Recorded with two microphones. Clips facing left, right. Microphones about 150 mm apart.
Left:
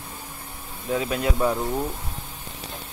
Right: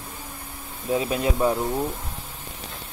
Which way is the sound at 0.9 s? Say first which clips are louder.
Right 1 dB; 20° right (ahead or behind).